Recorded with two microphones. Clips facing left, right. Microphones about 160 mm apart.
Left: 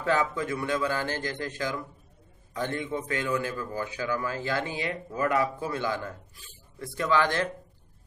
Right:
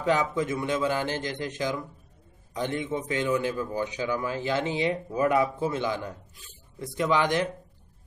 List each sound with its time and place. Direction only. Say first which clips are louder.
0.0 s a man's voice: right 2 dB; 20° right (ahead or behind)